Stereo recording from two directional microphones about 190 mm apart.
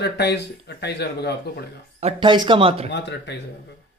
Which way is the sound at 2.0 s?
30° right (ahead or behind).